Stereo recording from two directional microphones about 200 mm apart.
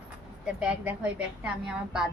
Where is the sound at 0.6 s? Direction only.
5° right (ahead or behind).